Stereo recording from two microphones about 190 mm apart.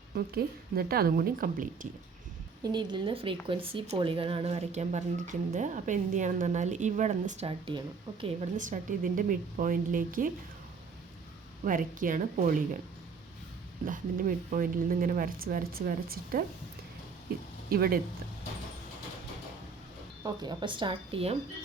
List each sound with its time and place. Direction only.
0.1 s speech: 55° right (ahead or behind)
2.7 s speech: 25° right (ahead or behind); by 10.3 s 45° right (ahead or behind)
11.6 s speech: 45° right (ahead or behind)
13.8 s speech: 45° right (ahead or behind)
17.7 s speech: 50° right (ahead or behind)
20.2 s speech: 20° right (ahead or behind)